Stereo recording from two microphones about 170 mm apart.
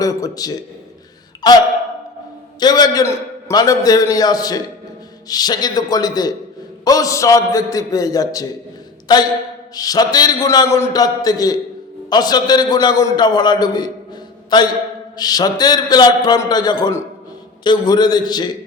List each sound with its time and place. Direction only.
0.0 s a man's voice: 20° left (ahead or behind)
2.6 s a man's voice: 25° left (ahead or behind)